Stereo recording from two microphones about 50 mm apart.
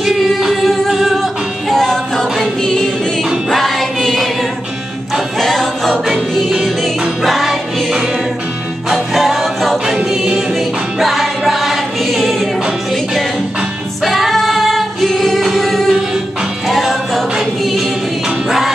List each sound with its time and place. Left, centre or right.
0.0 s singing: centre
2.6 s music: centre
5.4 s music: centre
9.8 s choir: centre
11.0 s choir: centre
14.0 s singing: centre
16.6 s music: centre